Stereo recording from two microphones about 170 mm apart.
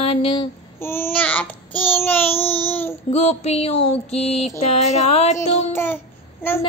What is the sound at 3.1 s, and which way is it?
Child singing, 40° left (ahead or behind).